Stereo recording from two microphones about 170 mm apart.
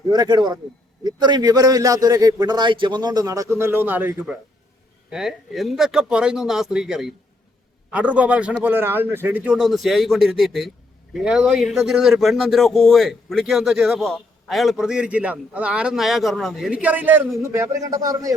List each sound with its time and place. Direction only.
0.1 s a man's voice: 25° right (ahead or behind)